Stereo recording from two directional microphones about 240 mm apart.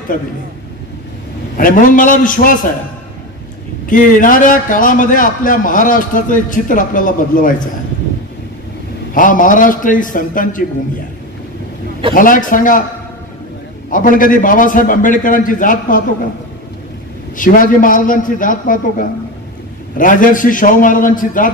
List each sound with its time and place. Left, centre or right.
1.6 s a man's voice: left
3.9 s a man's voice: left
9.1 s a man's voice: left
12.1 s a man's voice: left
13.8 s a man's voice: left
17.4 s a man's voice: left